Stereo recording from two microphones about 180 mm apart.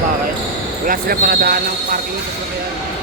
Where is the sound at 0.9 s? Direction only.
55° right (ahead or behind).